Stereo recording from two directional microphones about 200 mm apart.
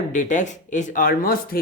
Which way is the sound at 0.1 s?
40° left (ahead or behind).